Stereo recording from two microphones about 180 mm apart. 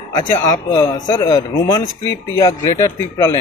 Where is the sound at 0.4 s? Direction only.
20° left (ahead or behind).